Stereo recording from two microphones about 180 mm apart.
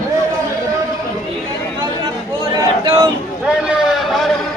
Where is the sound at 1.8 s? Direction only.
25° right (ahead or behind).